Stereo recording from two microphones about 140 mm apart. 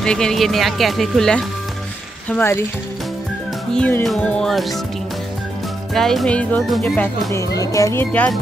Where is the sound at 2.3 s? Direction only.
15° left (ahead or behind).